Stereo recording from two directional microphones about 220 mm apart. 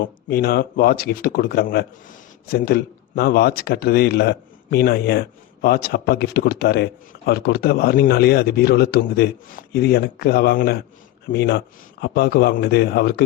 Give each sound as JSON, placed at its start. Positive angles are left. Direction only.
{"t": 0.0, "sound": "speech", "side_deg": 45}